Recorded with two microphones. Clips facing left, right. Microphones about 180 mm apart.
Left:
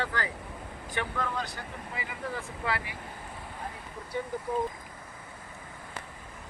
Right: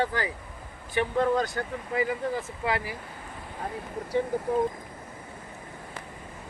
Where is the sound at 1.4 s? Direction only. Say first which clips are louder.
Right 8 dB; 50° right (ahead or behind).